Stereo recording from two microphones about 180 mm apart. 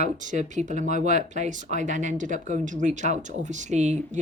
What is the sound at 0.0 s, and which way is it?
Speech, 45° right (ahead or behind).